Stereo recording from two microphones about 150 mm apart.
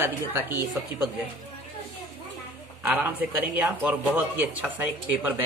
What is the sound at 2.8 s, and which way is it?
Speech, 10° right (ahead or behind).